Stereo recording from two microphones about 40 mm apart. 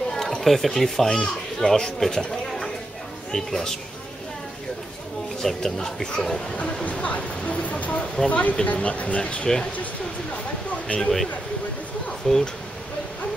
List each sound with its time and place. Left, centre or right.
0.1 s a sound: centre
0.5 s speech: centre
2.0 s a sound: centre
3.3 s speech: centre
5.4 s speech: centre
6.5 s speech: left
7.6 s a sound: left
8.3 s speech: left
11.0 s speech: centre
12.2 s speech: centre